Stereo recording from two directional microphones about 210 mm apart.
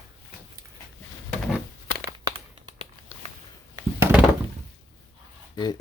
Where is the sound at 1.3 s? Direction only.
Centre (ahead or behind).